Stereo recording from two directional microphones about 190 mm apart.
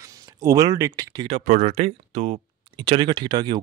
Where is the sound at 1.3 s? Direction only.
35° right (ahead or behind).